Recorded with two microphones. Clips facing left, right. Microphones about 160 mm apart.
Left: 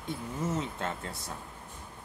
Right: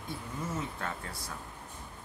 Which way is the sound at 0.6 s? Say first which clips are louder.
Left 3 dB; 25° left (ahead or behind).